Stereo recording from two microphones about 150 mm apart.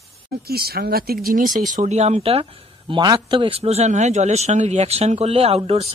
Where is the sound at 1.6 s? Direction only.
60° right (ahead or behind).